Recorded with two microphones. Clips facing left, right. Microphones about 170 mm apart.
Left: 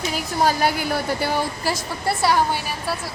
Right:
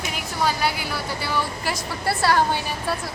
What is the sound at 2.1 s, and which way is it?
Speech, 15° left (ahead or behind).